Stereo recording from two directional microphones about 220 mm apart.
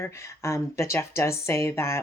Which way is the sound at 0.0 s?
15° left (ahead or behind).